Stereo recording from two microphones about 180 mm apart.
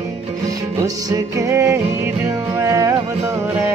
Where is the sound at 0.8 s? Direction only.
20° right (ahead or behind).